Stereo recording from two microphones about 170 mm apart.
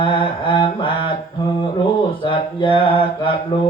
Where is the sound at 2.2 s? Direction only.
30° left (ahead or behind).